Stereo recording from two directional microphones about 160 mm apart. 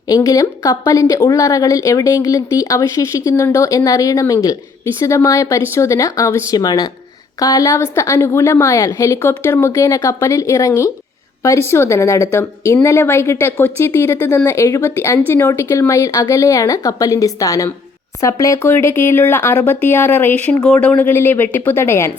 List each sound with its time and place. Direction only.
0.1 s speech: 20° left (ahead or behind)